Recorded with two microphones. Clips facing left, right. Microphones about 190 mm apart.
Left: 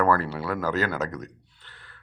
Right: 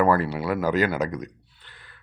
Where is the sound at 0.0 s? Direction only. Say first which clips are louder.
Right 2 dB; 15° right (ahead or behind).